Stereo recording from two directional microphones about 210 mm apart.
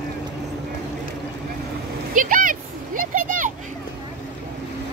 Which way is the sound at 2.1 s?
40° right (ahead or behind).